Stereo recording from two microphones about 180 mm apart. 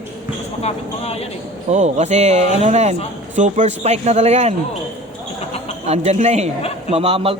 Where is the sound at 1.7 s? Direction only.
40° right (ahead or behind).